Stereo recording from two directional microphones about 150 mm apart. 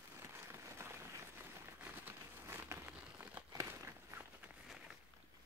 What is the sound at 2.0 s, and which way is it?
Crumpling, 15° right (ahead or behind).